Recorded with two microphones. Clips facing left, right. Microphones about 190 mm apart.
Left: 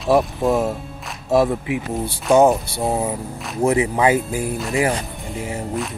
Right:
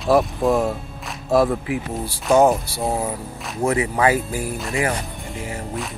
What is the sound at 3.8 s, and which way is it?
Speech, 20° left (ahead or behind).